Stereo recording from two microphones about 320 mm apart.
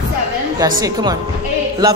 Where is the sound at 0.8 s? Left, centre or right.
Centre.